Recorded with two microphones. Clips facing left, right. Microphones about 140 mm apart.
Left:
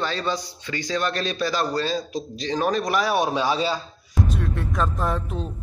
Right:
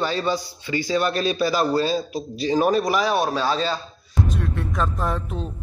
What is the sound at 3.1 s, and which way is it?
Speech, 15° left (ahead or behind).